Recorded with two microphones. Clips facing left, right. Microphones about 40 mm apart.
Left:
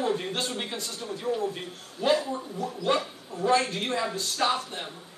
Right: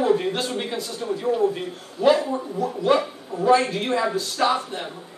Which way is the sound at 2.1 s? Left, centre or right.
Right.